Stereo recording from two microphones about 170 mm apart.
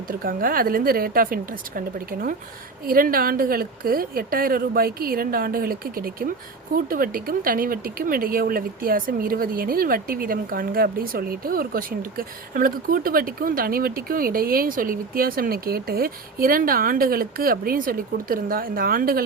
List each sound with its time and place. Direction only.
0.1 s speech: 60° right (ahead or behind)